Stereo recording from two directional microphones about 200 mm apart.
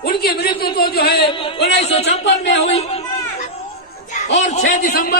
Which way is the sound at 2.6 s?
30° left (ahead or behind).